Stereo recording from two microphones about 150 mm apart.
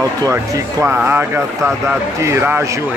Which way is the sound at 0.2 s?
20° right (ahead or behind).